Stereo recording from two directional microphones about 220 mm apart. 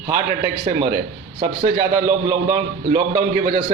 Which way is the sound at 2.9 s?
35° right (ahead or behind).